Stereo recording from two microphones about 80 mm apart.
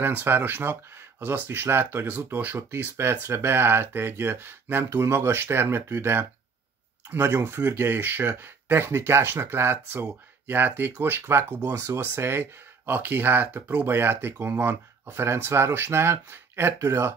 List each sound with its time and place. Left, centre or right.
0.0 s speech: right
13.8 s speech: right